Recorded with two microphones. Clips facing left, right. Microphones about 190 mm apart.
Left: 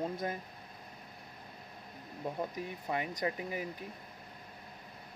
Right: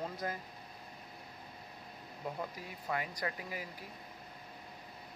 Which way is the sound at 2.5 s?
20° left (ahead or behind).